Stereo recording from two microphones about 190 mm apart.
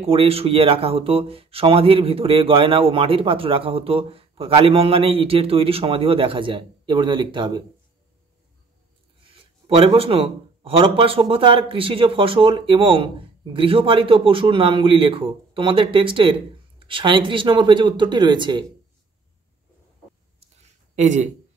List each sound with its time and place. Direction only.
0.0 s speech: 30° right (ahead or behind)
9.2 s speech: 30° right (ahead or behind)
20.6 s a sound: 40° right (ahead or behind)